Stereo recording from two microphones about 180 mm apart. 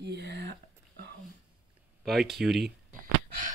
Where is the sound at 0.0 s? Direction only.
70° right (ahead or behind).